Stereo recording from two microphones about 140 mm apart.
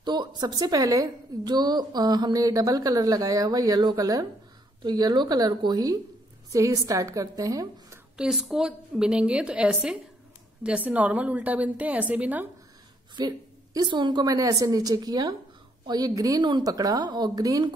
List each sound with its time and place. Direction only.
0.0 s a woman's voice: 30° right (ahead or behind)
8.2 s a woman's voice: centre (ahead or behind)
13.2 s a woman's voice: 30° right (ahead or behind)